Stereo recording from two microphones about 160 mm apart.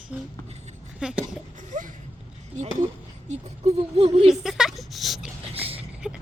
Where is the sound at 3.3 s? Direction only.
40° right (ahead or behind).